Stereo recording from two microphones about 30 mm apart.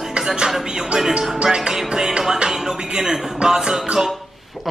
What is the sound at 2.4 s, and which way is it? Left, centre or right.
Speech, right.